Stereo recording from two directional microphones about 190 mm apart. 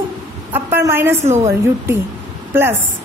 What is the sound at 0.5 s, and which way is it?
Speech, 10° right (ahead or behind).